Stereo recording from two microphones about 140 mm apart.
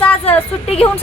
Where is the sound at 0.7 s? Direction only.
45° left (ahead or behind).